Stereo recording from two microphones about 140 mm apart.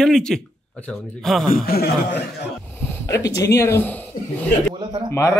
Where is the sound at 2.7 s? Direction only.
15° left (ahead or behind).